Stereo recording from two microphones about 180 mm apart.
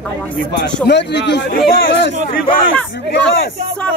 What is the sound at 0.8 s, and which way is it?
Speech, 70° left (ahead or behind).